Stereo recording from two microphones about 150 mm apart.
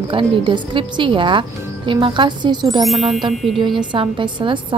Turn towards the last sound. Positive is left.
turn(degrees=-35)  # may be behind; listen again after turning